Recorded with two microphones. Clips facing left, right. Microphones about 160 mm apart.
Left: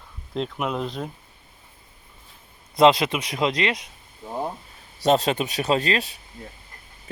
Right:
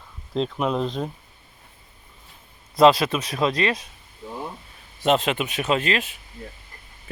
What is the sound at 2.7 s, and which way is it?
Speech, 20° left (ahead or behind).